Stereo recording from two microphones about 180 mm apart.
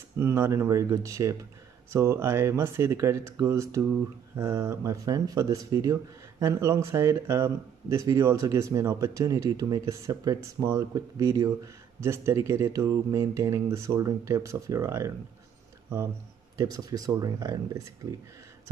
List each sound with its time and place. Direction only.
0.2 s speech: 15° right (ahead or behind)
16.5 s speech: 20° right (ahead or behind)